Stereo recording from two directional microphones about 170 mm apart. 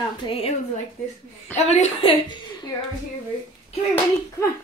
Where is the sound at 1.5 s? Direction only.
40° left (ahead or behind).